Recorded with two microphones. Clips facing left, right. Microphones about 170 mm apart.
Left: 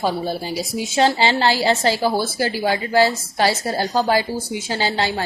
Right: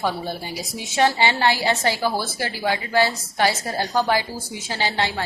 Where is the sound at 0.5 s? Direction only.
25° left (ahead or behind).